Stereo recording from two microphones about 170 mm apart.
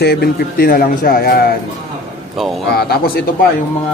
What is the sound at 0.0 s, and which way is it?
Speech, 65° left (ahead or behind).